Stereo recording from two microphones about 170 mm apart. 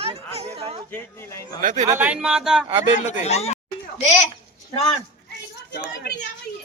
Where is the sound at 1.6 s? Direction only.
50° right (ahead or behind).